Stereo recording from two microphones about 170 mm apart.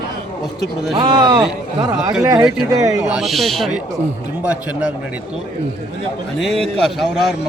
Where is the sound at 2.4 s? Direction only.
5° right (ahead or behind).